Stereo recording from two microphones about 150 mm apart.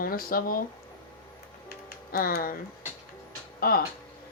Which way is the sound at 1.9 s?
90° left.